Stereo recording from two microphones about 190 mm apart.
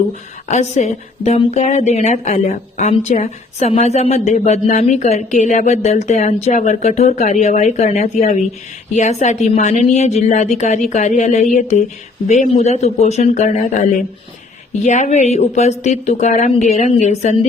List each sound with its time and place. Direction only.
0.4 s speech: 35° left (ahead or behind)